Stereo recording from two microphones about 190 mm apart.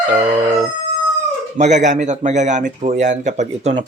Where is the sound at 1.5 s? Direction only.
40° right (ahead or behind).